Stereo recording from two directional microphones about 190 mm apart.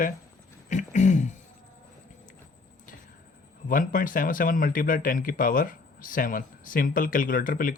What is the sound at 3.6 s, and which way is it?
Speech, 45° left (ahead or behind).